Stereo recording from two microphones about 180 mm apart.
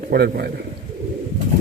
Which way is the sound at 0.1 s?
60° right (ahead or behind).